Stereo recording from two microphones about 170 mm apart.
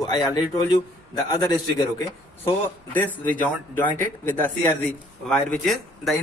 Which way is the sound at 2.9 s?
10° left (ahead or behind).